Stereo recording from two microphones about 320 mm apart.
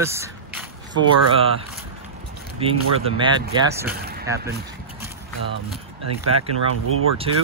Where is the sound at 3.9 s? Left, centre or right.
Right.